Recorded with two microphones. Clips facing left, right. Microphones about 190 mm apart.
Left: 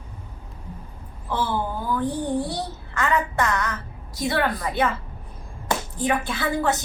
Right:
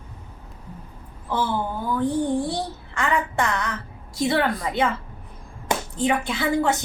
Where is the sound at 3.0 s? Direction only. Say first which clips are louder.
Left 1 dB; 25° right (ahead or behind).